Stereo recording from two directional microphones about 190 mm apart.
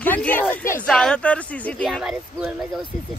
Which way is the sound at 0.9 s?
5° left (ahead or behind).